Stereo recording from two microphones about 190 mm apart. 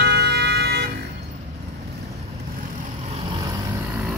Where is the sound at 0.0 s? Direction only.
60° right (ahead or behind).